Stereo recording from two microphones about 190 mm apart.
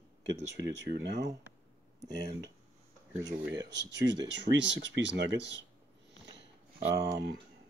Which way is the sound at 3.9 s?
70° right (ahead or behind).